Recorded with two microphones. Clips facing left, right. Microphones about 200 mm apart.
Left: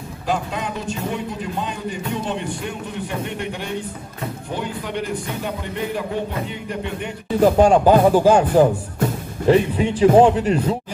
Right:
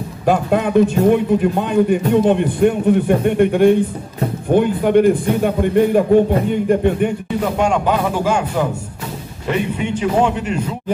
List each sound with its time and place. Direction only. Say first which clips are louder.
0.2 s a man's voice: right 9 dB; 55° right (ahead or behind)
7.3 s a man's voice: left 6 dB; 35° left (ahead or behind)